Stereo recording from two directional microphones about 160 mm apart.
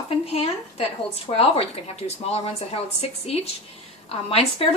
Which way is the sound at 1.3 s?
40° left (ahead or behind).